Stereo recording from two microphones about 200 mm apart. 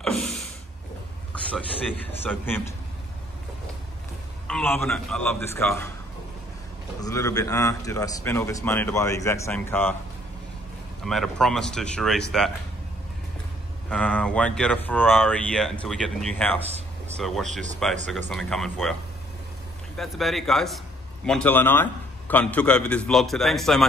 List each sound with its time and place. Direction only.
0.0 s a sound: 5° left (ahead or behind)
1.3 s a man's voice: 5° left (ahead or behind)
4.5 s speech: 5° left (ahead or behind)
7.0 s a man's voice: 15° left (ahead or behind)
11.1 s speech: centre (ahead or behind)
13.8 s speech: 5° left (ahead or behind)
16.6 s a sound: 30° right (ahead or behind)
17.8 s speech: centre (ahead or behind)
20.0 s a man's voice: centre (ahead or behind)